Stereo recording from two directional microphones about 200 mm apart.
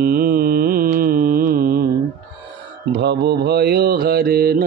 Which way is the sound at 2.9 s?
55° right (ahead or behind).